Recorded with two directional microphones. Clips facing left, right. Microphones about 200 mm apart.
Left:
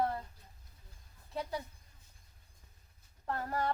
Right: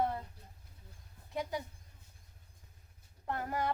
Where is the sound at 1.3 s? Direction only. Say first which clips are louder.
Right 1 dB; 15° right (ahead or behind).